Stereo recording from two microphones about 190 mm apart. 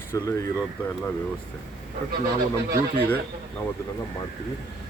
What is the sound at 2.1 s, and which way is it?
Speech, 55° right (ahead or behind).